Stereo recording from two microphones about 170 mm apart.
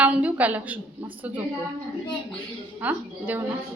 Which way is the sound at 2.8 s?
10° right (ahead or behind).